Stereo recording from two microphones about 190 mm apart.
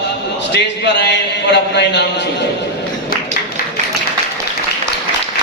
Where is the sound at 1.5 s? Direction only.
65° left (ahead or behind).